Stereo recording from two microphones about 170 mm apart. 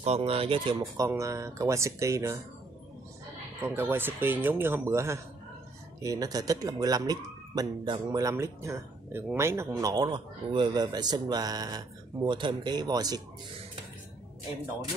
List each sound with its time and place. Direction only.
0.0 s speech: 35° right (ahead or behind); by 2.4 s 20° right (ahead or behind)
3.6 s speech: 15° right (ahead or behind)